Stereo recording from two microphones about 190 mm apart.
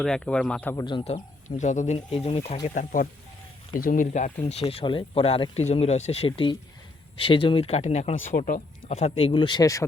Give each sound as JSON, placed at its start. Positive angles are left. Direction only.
{"t": 0.0, "sound": "speech", "side_deg": 5}
{"t": 0.9, "sound": "speech", "side_deg": 30}
{"t": 2.6, "sound": "speech", "side_deg": 45}
{"t": 4.7, "sound": "speech", "side_deg": 30}